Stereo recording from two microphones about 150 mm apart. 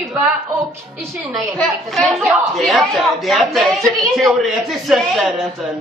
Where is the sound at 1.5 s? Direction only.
5° left (ahead or behind).